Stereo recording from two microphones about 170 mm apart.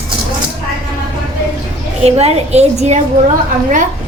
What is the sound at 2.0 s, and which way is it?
Speech, 40° right (ahead or behind).